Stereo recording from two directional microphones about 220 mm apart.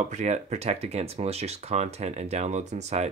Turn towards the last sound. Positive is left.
turn(degrees=-30)  # may be behind; listen again after turning